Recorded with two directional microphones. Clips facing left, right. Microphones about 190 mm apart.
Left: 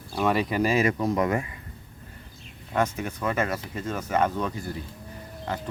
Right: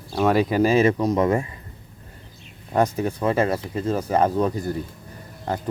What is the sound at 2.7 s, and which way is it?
Speech, 35° right (ahead or behind).